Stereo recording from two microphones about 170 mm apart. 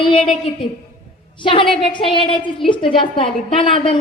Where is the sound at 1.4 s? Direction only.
30° left (ahead or behind).